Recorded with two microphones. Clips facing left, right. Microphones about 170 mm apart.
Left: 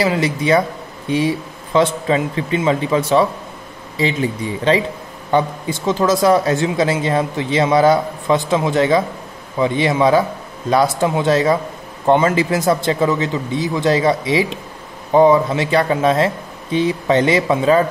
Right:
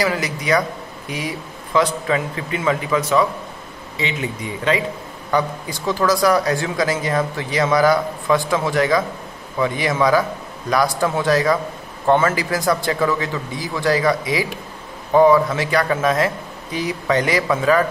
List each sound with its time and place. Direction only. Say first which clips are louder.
0.0 s speech: left 4 dB; 25° left (ahead or behind)